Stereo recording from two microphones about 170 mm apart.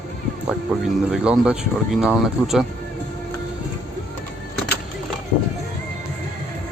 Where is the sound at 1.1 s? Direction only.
5° right (ahead or behind).